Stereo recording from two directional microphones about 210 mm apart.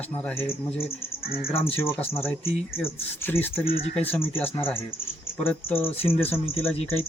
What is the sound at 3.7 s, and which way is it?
Speech, 30° left (ahead or behind).